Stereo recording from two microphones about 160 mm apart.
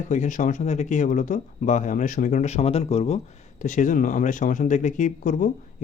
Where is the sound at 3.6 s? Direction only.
55° left (ahead or behind).